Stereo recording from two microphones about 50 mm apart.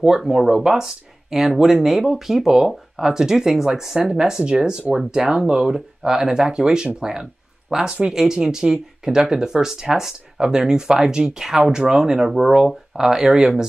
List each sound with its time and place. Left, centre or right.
0.2 s speech: centre